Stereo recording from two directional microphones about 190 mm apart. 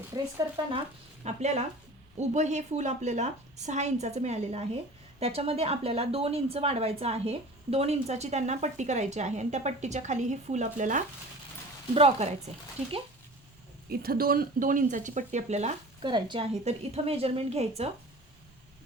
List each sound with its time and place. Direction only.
0.1 s speech: 20° right (ahead or behind)
1.2 s a woman's voice: 35° right (ahead or behind)
13.9 s a woman's voice: 50° right (ahead or behind); by 17.9 s 35° right (ahead or behind)